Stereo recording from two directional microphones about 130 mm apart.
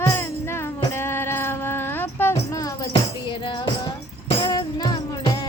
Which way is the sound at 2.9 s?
40° left (ahead or behind).